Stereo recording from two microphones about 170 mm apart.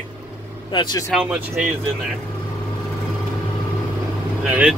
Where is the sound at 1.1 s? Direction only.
10° right (ahead or behind).